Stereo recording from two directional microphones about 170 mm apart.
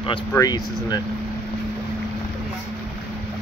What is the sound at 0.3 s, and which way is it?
Speech, 20° left (ahead or behind).